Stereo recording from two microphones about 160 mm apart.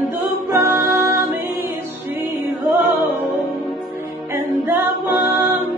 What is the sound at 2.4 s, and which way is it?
Music, 15° right (ahead or behind).